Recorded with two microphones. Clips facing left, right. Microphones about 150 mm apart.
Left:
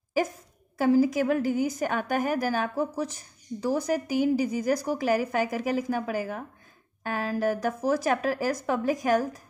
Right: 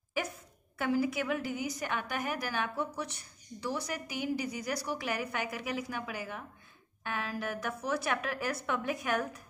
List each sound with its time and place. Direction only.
0.1 s a woman's voice: 40° left (ahead or behind)